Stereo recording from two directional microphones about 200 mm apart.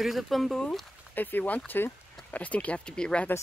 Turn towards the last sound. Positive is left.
turn(degrees=10)  # may be behind; listen again after turning